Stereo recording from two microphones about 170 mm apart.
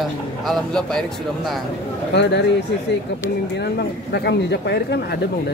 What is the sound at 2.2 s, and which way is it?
Speech, 85° left.